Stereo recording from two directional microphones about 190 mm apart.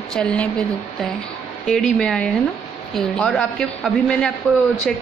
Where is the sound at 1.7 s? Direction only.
Centre (ahead or behind).